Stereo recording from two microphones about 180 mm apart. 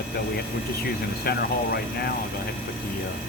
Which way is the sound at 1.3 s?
60° left (ahead or behind).